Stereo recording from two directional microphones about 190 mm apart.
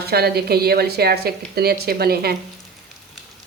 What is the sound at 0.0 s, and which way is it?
A woman's voice, 55° right (ahead or behind).